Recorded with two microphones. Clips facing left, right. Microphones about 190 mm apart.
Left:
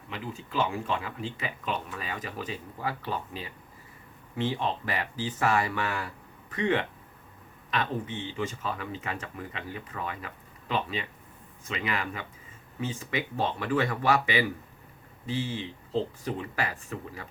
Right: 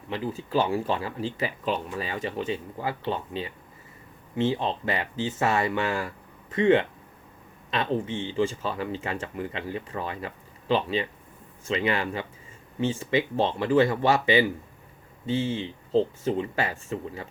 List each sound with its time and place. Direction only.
0.1 s speech: 35° right (ahead or behind)